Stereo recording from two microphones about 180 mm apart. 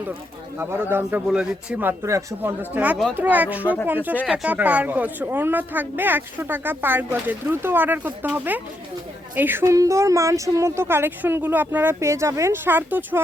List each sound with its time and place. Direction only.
0.6 s speech: 10° right (ahead or behind)